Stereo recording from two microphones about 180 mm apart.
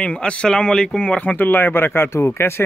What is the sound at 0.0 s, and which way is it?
Speech, 5° left (ahead or behind).